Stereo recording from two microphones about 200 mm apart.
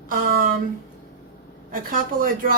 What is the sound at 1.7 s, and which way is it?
Speech, 45° right (ahead or behind).